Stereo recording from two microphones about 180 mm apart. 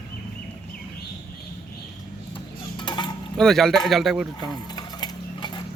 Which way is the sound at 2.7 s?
25° left (ahead or behind).